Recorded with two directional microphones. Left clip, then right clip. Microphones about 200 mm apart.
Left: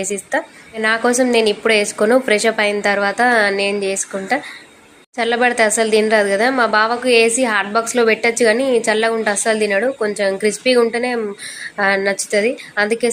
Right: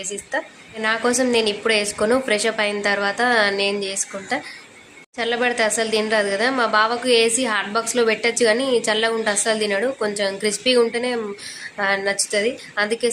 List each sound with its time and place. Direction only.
0.0 s a woman's voice: 25° left (ahead or behind)